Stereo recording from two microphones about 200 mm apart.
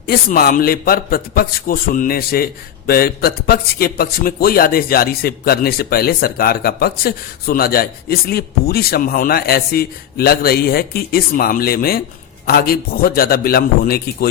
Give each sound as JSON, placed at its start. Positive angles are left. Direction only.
{"t": 0.1, "sound": "a man's voice", "side_deg": 50}